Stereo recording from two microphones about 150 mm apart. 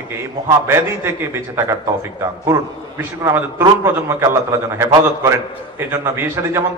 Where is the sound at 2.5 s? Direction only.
20° right (ahead or behind).